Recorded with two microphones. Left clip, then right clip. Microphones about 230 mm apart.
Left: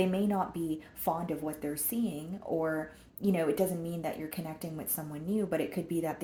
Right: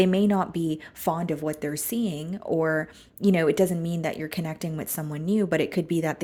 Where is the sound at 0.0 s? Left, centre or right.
Right.